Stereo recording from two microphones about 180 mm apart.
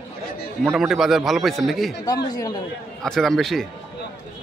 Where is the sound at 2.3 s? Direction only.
20° left (ahead or behind).